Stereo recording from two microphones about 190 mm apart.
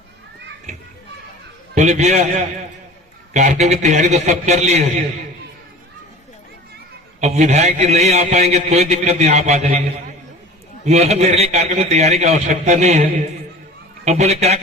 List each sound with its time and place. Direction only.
1.7 s a man's voice: 40° right (ahead or behind)
3.3 s a man's voice: 40° right (ahead or behind)
7.2 s a man's voice: 40° right (ahead or behind)
10.8 s a man's voice: 35° right (ahead or behind)